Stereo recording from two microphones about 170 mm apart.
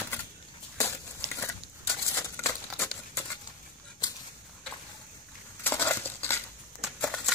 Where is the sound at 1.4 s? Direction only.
15° left (ahead or behind).